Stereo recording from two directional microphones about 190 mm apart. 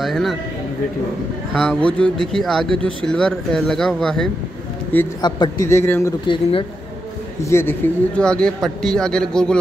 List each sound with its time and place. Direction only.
0.0 s speech: centre (ahead or behind)
1.5 s speech: 5° left (ahead or behind)
5.2 s speech: 20° left (ahead or behind)
6.2 s speech: 25° left (ahead or behind)
7.4 s speech: 10° left (ahead or behind)